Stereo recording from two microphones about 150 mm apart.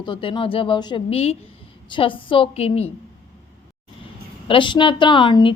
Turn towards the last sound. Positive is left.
turn(degrees=35)  # may be behind; listen again after turning